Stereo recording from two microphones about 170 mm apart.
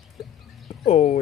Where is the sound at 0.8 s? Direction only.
40° left (ahead or behind).